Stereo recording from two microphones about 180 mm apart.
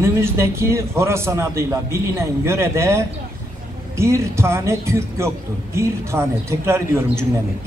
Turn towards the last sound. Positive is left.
turn(degrees=-15)  # may be behind; listen again after turning